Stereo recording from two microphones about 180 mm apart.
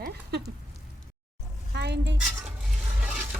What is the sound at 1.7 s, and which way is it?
Speech, 70° right (ahead or behind).